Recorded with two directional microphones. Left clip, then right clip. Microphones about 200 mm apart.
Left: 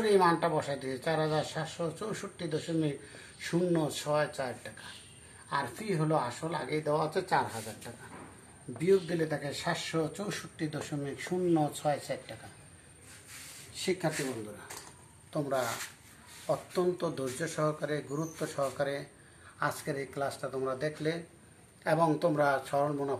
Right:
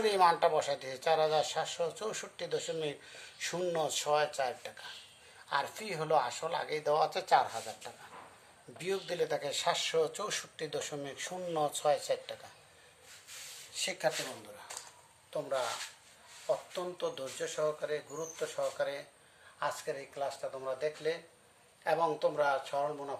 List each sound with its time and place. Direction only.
0.0 s speech: 55° right (ahead or behind)
8.8 s speech: 50° right (ahead or behind)
13.7 s speech: 55° right (ahead or behind)
15.3 s speech: 25° right (ahead or behind)
16.4 s speech: 5° right (ahead or behind)